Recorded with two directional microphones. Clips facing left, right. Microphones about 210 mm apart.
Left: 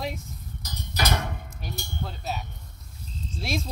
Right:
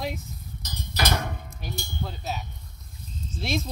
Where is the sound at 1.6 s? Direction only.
Centre (ahead or behind).